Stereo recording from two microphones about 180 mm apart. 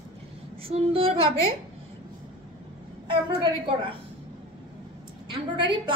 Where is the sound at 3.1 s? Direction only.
25° right (ahead or behind).